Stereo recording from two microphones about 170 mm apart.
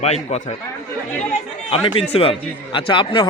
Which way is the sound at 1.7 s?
35° left (ahead or behind).